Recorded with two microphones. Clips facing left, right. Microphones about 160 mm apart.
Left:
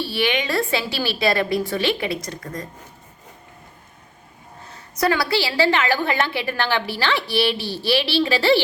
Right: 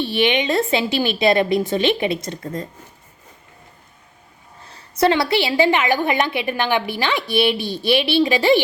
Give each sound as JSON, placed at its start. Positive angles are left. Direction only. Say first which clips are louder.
{"t": 0.0, "sound": "a woman's voice", "louder": "right 4 dB", "side_deg": -20}
{"t": 4.7, "sound": "a woman's voice", "louder": "right 4 dB", "side_deg": -25}